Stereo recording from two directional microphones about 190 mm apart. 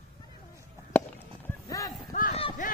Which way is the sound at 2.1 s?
45° left (ahead or behind).